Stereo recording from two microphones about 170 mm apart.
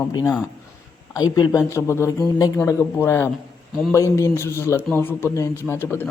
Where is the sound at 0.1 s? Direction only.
25° left (ahead or behind).